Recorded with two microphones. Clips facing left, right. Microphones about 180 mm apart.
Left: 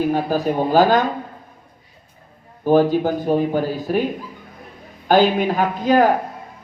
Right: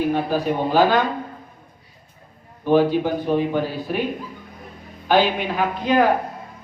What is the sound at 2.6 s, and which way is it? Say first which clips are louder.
Speech: left 2 dB; 45° left (ahead or behind).